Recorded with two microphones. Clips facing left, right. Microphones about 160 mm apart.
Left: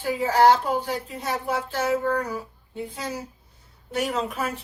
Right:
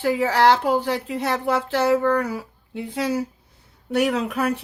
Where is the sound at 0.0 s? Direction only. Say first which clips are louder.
Right 1 dB; 75° right (ahead or behind).